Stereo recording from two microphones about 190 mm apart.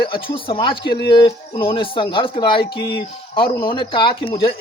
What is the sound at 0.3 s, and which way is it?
Speech, 25° left (ahead or behind).